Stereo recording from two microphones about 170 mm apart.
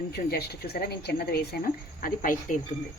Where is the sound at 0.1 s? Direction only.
70° left (ahead or behind).